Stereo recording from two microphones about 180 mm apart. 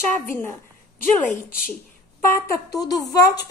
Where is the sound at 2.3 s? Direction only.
20° left (ahead or behind).